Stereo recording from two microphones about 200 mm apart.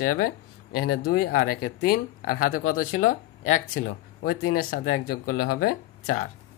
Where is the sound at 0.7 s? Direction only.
45° left (ahead or behind).